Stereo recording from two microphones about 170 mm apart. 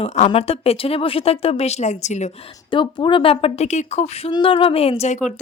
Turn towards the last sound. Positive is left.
turn(degrees=40)  # may be behind; listen again after turning